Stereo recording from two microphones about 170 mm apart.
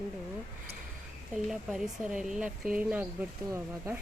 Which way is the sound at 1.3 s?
Centre (ahead or behind).